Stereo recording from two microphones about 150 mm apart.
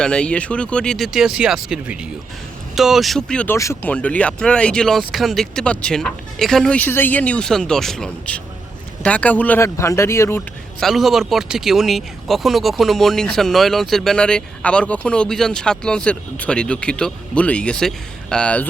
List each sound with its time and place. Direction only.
0.0 s speech: 5° left (ahead or behind)
10.8 s speech: centre (ahead or behind)